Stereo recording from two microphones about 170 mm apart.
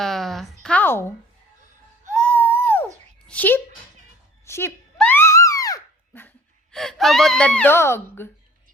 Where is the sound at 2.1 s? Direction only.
10° left (ahead or behind).